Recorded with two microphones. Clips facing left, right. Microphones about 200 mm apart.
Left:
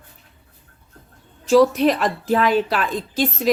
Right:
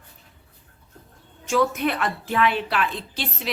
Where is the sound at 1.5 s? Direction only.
35° left (ahead or behind).